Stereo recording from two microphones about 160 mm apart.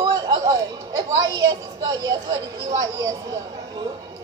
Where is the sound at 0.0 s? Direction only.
25° right (ahead or behind).